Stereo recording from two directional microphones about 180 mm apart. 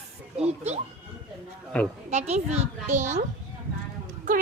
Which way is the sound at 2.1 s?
40° right (ahead or behind).